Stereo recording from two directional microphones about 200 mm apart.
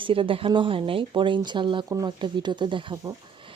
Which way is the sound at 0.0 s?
25° right (ahead or behind).